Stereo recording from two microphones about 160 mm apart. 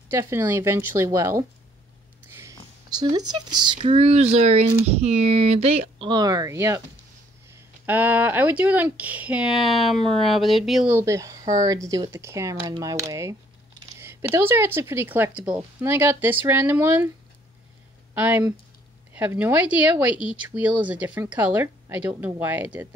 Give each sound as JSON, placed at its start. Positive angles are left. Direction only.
{"t": 0.1, "sound": "speech", "side_deg": -15}
{"t": 3.0, "sound": "speech", "side_deg": -25}
{"t": 11.0, "sound": "speech", "side_deg": -20}
{"t": 18.1, "sound": "speech", "side_deg": -10}